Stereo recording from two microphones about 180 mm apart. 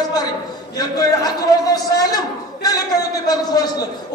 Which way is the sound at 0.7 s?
20° left (ahead or behind).